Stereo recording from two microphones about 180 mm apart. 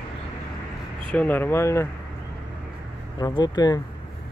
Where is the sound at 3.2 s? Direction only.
20° left (ahead or behind).